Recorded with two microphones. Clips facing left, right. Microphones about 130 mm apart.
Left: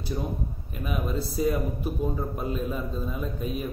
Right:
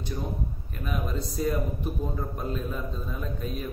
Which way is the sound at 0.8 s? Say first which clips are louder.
Left 2 dB; 5° left (ahead or behind).